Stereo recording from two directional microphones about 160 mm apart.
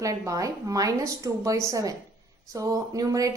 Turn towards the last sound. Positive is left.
turn(degrees=-20)  # may be behind; listen again after turning